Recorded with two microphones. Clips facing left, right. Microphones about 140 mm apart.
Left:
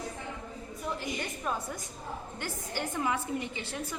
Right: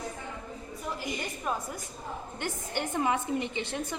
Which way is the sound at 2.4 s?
20° right (ahead or behind).